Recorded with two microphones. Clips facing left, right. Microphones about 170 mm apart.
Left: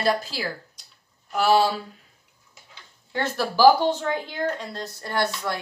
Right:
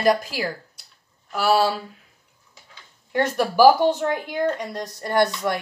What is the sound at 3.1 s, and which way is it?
Speech, 15° right (ahead or behind).